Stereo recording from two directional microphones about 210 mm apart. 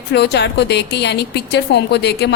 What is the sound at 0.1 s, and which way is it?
A woman's voice, 55° left (ahead or behind).